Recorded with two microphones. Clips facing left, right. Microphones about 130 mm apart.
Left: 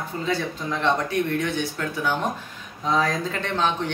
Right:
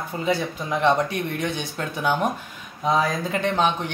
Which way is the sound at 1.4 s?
20° right (ahead or behind).